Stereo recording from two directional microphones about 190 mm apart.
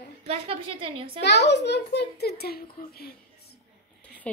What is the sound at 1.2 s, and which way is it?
A child's voice, 65° left (ahead or behind).